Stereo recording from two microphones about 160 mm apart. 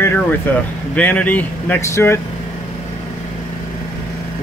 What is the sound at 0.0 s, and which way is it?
Speech, 10° left (ahead or behind).